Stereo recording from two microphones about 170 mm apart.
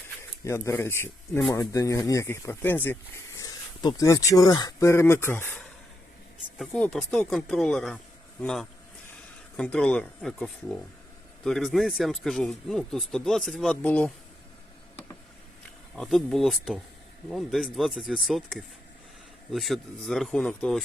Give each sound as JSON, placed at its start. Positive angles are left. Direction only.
{"t": 0.2, "sound": "speech", "side_deg": 15}
{"t": 1.5, "sound": "speech", "side_deg": 20}
{"t": 16.0, "sound": "speech", "side_deg": 0}